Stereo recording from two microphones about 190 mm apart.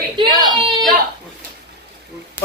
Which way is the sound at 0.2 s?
25° right (ahead or behind).